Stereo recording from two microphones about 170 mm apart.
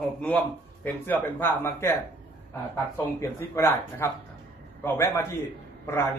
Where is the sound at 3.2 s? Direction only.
15° left (ahead or behind).